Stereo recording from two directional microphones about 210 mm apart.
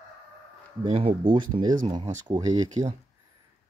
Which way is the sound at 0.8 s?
25° right (ahead or behind).